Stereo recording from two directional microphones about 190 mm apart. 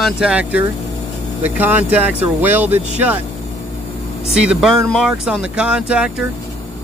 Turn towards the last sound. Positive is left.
turn(degrees=-5)  # may be behind; listen again after turning